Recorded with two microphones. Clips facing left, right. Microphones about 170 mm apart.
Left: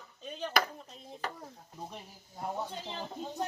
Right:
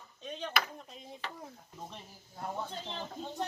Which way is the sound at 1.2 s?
45° left (ahead or behind).